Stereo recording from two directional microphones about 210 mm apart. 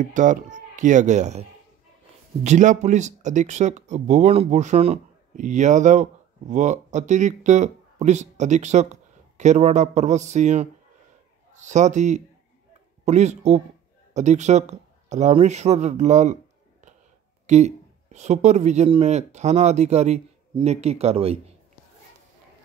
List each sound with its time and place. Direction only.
0.0 s speech: 35° right (ahead or behind)
2.4 s speech: 35° right (ahead or behind)
17.5 s speech: 35° right (ahead or behind)